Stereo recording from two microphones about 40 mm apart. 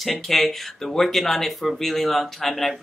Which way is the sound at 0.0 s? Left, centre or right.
Centre.